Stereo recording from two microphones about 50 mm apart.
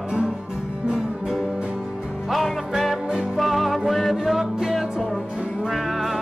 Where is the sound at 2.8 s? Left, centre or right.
Centre.